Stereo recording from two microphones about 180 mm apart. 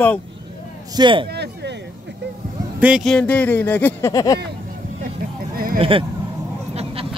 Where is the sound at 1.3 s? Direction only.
65° right (ahead or behind).